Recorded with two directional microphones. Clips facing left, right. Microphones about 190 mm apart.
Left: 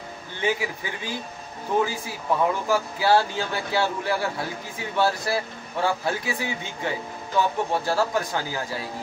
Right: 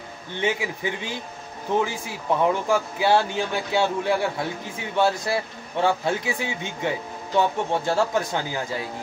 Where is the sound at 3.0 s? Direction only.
20° right (ahead or behind).